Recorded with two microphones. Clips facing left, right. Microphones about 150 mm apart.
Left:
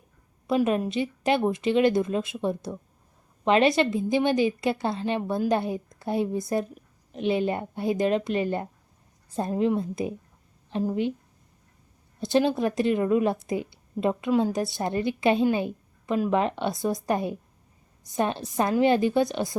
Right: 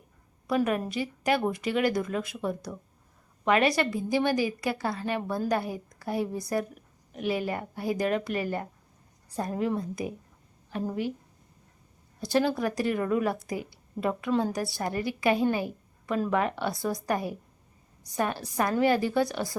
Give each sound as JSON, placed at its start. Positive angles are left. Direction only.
{"t": 0.4, "sound": "a woman's voice", "side_deg": 20}
{"t": 12.2, "sound": "a woman's voice", "side_deg": 20}